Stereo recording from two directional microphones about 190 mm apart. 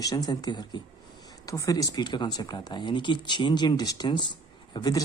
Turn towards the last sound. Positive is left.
turn(degrees=20)  # may be behind; listen again after turning